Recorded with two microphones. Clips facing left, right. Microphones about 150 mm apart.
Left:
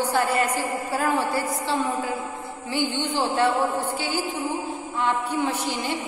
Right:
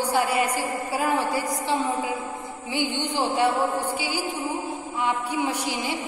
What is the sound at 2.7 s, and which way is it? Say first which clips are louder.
A woman's voice: left 1 dB; 15° right (ahead or behind).